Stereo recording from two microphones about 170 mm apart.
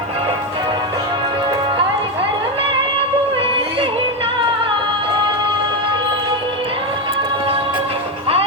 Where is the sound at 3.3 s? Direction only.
30° right (ahead or behind).